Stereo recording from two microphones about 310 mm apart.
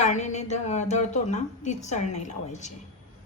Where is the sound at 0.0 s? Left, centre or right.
Left.